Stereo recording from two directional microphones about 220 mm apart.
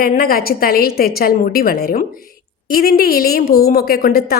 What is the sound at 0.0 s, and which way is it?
A woman's voice, 40° left (ahead or behind).